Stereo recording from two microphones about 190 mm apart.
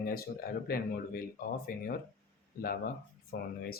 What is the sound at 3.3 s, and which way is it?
Speech, 50° left (ahead or behind).